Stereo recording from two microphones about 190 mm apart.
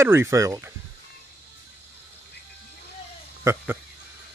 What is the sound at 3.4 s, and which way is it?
Speech, 15° right (ahead or behind).